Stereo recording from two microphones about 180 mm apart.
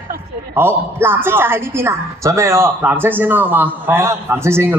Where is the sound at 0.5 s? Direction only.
15° right (ahead or behind).